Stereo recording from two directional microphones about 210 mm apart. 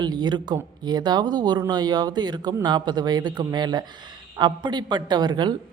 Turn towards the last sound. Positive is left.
turn(degrees=-20)  # may be behind; listen again after turning